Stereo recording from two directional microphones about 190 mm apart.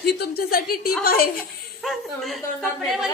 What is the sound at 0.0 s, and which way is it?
A woman's voice, 55° left (ahead or behind).